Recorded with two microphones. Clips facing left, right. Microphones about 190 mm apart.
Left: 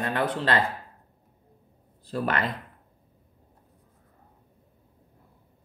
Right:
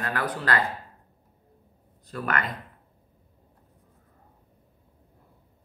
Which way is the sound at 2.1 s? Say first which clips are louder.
Left 2 dB; 30° left (ahead or behind).